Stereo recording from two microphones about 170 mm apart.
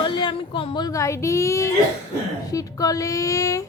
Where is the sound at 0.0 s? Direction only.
25° left (ahead or behind).